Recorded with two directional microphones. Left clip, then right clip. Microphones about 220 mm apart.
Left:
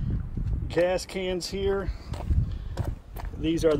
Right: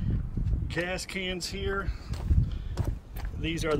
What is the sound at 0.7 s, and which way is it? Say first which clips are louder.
Speech: left 8 dB; 10° left (ahead or behind).